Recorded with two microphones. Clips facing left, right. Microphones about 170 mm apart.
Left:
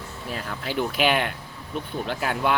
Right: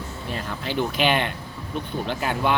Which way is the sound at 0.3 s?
5° left (ahead or behind).